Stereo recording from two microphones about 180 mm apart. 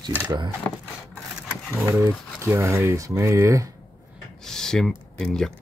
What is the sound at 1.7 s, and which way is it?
Speech, 15° right (ahead or behind).